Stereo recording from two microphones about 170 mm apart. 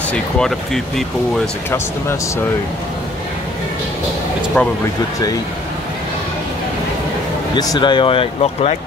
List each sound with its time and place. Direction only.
0.1 s speech: 5° left (ahead or behind)
4.6 s speech: 5° left (ahead or behind)
7.5 s speech: 25° left (ahead or behind)